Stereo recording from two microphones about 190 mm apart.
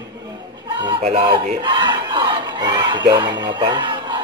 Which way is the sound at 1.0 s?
30° right (ahead or behind).